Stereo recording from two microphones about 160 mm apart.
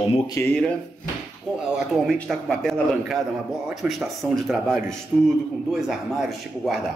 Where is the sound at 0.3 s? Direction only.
15° left (ahead or behind).